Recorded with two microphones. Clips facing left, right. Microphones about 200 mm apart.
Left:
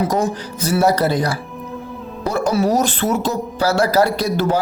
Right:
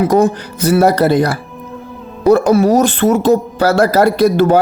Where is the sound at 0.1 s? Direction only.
60° right (ahead or behind).